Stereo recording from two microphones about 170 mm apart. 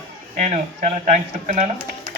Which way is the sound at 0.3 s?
45° right (ahead or behind).